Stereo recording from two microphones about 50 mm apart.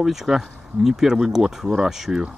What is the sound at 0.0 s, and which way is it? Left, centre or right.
Speech, centre.